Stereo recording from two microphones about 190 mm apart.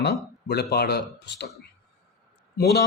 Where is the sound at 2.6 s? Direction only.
60° left (ahead or behind).